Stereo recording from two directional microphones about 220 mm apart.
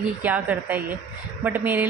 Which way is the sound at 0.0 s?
5° right (ahead or behind).